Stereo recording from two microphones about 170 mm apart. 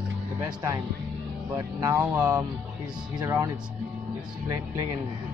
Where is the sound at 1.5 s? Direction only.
20° right (ahead or behind).